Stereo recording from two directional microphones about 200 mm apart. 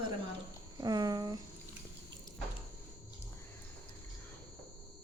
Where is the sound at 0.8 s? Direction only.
20° right (ahead or behind).